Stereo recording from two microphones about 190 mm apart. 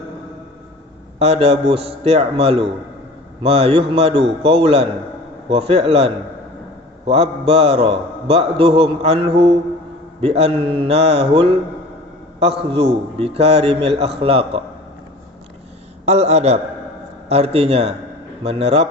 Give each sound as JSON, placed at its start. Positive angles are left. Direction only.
{"t": 1.2, "sound": "a man's voice", "side_deg": -30}
{"t": 7.1, "sound": "a man's voice", "side_deg": -30}
{"t": 16.0, "sound": "a man's voice", "side_deg": -35}